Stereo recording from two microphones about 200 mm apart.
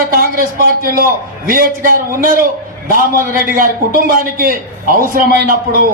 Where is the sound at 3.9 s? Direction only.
45° right (ahead or behind).